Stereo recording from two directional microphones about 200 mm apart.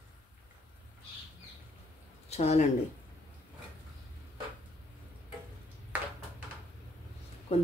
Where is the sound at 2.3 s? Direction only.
35° left (ahead or behind).